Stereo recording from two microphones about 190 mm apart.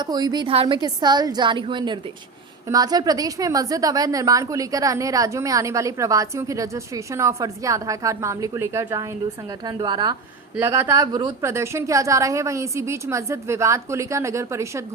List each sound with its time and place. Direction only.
0.0 s a woman's voice: 20° right (ahead or behind)